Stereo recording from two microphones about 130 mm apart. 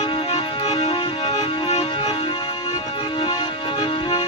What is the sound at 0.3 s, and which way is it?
Music, 55° left (ahead or behind).